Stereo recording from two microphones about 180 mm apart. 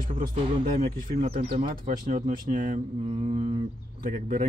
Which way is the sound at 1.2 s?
35° right (ahead or behind).